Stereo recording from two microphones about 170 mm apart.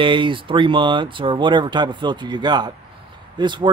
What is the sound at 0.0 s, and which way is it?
Speech, 30° right (ahead or behind).